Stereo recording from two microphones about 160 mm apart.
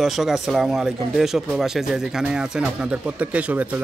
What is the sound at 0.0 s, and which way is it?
Speech, centre (ahead or behind).